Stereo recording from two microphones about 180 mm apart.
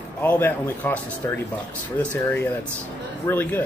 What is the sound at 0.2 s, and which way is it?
Speech, 10° left (ahead or behind).